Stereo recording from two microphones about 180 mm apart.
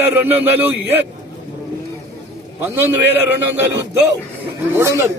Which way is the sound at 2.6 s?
10° right (ahead or behind).